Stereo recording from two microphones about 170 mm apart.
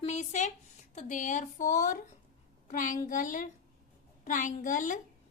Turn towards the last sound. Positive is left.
turn(degrees=50)  # may be behind; listen again after turning